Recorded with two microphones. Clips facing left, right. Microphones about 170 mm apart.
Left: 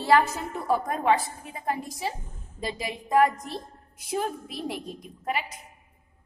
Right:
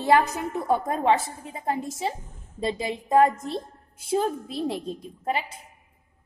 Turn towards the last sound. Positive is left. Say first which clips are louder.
# right 2 dB
turn(degrees=-30)  # may be behind; listen again after turning